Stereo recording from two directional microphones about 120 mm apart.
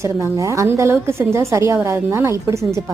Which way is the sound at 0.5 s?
25° right (ahead or behind).